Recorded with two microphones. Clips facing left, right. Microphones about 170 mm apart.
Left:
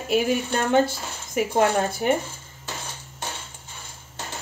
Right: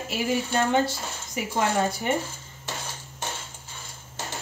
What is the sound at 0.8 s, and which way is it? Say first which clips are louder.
A woman's voice: even; 55° left (ahead or behind).